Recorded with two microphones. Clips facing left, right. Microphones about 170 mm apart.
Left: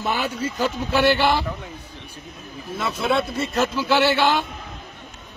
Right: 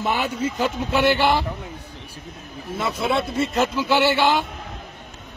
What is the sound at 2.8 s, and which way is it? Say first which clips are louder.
A man's voice: even; 20° right (ahead or behind).